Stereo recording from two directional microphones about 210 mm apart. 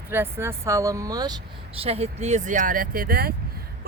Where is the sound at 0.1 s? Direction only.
10° right (ahead or behind).